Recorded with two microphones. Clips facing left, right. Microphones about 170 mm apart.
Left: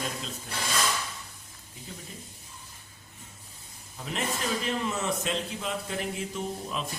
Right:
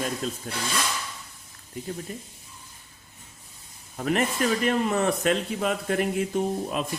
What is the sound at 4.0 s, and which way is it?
Speech, 60° right (ahead or behind).